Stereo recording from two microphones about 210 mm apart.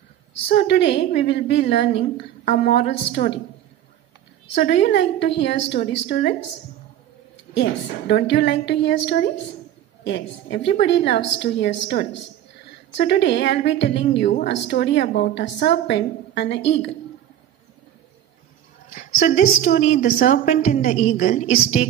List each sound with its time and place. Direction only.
0.5 s a woman's voice: 55° left (ahead or behind)
4.6 s a woman's voice: 55° left (ahead or behind)
8.1 s a woman's voice: 55° left (ahead or behind)
18.9 s a woman's voice: 35° left (ahead or behind)